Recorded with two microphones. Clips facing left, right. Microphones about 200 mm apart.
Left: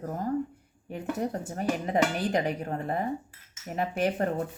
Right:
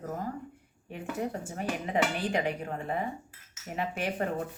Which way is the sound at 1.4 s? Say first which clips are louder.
Left 4 dB; 40° left (ahead or behind).